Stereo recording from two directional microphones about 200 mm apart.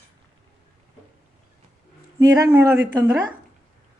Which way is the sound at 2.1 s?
15° right (ahead or behind).